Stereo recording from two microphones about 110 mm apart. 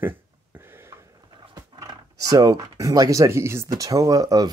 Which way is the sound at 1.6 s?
30° right (ahead or behind).